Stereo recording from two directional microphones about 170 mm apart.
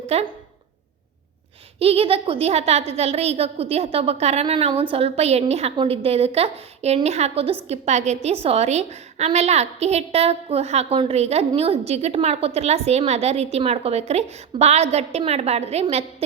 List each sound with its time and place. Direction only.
0.1 s a woman's voice: 40° right (ahead or behind)
1.8 s a woman's voice: 35° right (ahead or behind)